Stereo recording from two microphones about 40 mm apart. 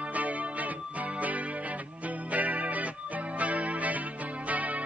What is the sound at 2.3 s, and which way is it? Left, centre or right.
Music, right.